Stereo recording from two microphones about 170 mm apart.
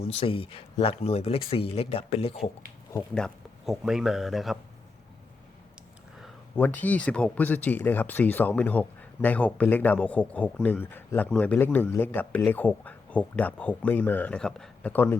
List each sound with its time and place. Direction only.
0.0 s speech: 35° left (ahead or behind)
3.2 s speech: centre (ahead or behind)
6.6 s speech: 10° left (ahead or behind)